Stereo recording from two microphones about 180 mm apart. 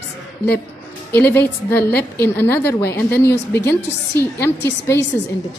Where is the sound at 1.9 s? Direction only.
60° left (ahead or behind).